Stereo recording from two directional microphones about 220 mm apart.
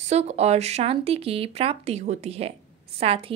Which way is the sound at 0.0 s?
30° right (ahead or behind).